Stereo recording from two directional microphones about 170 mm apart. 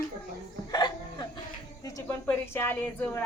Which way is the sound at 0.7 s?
25° left (ahead or behind).